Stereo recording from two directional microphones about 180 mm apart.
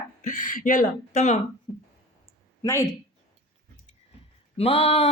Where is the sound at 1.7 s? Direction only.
25° left (ahead or behind).